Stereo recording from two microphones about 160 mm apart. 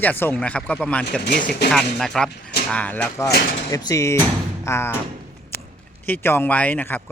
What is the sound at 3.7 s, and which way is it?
Speech, 20° left (ahead or behind).